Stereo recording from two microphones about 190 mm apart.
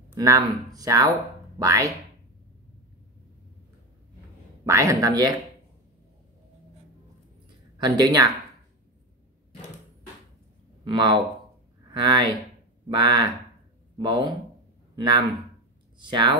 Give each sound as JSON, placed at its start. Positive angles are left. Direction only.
{"t": 0.1, "sound": "speech", "side_deg": -20}
{"t": 4.6, "sound": "speech", "side_deg": -15}
{"t": 7.7, "sound": "speech", "side_deg": -20}
{"t": 10.8, "sound": "speech", "side_deg": -25}